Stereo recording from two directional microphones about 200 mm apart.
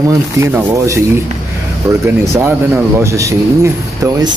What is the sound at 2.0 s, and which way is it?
Speech, 10° right (ahead or behind).